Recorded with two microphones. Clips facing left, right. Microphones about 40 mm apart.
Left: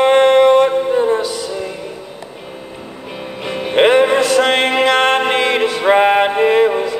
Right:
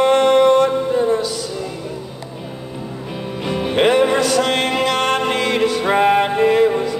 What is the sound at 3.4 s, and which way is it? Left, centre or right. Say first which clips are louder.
Music: left 3 dB; centre.